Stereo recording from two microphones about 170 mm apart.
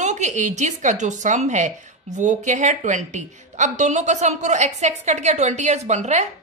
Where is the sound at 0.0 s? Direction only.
45° right (ahead or behind).